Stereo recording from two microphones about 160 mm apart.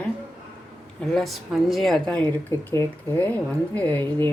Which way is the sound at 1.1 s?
Centre (ahead or behind).